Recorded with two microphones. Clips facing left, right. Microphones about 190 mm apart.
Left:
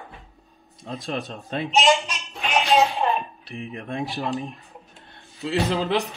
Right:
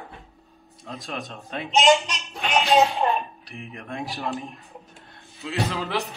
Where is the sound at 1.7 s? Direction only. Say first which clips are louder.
Right 1 dB; 15° right (ahead or behind).